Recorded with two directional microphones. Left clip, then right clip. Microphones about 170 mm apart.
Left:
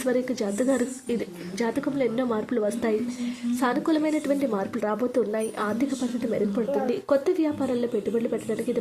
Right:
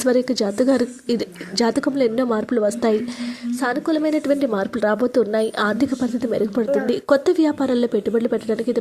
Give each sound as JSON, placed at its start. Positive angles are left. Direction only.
{"t": 0.0, "sound": "a woman's voice", "side_deg": -25}